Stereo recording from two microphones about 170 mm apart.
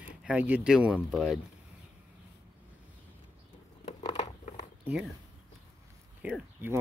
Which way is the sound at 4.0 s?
40° left (ahead or behind).